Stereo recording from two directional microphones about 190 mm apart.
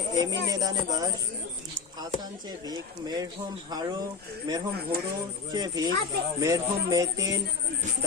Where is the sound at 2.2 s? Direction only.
20° right (ahead or behind).